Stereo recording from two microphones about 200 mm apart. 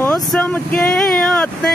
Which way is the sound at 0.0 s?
5° left (ahead or behind).